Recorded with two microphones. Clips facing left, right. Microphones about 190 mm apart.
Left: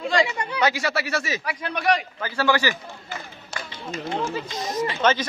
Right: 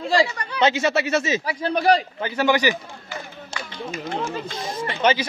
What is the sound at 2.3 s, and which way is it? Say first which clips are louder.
Speech: right 2 dB; 20° right (ahead or behind).